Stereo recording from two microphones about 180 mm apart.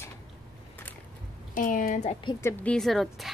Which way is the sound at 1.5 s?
50° left (ahead or behind).